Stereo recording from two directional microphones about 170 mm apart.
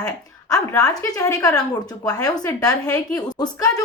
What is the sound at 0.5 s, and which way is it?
A woman's voice, 20° left (ahead or behind).